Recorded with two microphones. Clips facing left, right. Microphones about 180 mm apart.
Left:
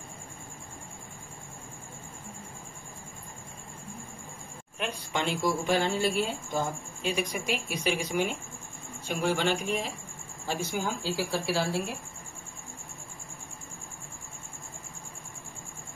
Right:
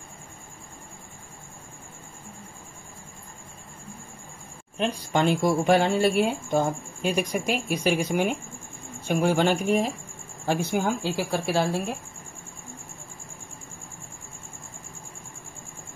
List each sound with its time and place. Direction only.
4.7 s a woman's voice: 35° right (ahead or behind)
5.2 s speech: 55° right (ahead or behind)
10.4 s speech: 60° right (ahead or behind)